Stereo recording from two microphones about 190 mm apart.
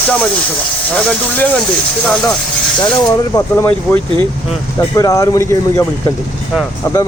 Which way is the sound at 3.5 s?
10° left (ahead or behind).